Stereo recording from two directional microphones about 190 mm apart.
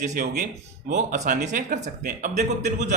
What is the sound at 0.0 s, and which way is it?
A man's voice, 40° right (ahead or behind).